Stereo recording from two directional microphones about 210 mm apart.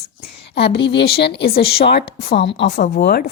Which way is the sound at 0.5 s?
55° left (ahead or behind).